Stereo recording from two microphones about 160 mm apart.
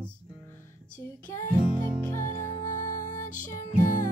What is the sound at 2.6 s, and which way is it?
Music, 50° left (ahead or behind).